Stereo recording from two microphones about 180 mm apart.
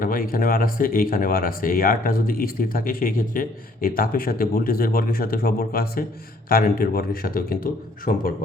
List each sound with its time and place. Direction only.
0.0 s speech: 50° left (ahead or behind)